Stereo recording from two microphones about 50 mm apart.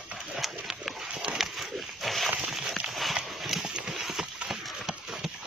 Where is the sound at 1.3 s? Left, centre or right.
Right.